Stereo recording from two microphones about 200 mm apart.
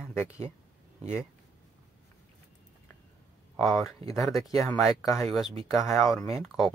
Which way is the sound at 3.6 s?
Centre (ahead or behind).